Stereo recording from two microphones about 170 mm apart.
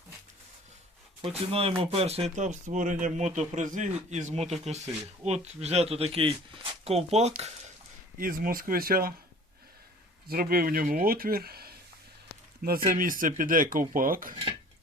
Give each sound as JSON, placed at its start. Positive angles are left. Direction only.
{"t": 1.2, "sound": "speech", "side_deg": -35}
{"t": 8.2, "sound": "speech", "side_deg": -60}
{"t": 10.2, "sound": "speech", "side_deg": -65}